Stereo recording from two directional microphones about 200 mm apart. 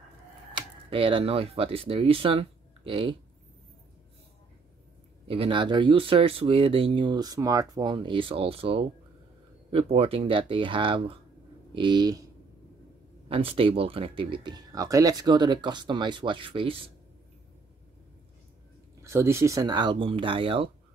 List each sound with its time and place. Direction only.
0.6 s speech: 25° right (ahead or behind)
5.3 s speech: 25° right (ahead or behind)
13.3 s speech: 30° right (ahead or behind)
19.0 s speech: 15° right (ahead or behind)